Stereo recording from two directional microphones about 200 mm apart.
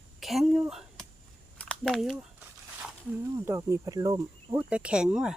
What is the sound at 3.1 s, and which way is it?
Speech, 15° right (ahead or behind).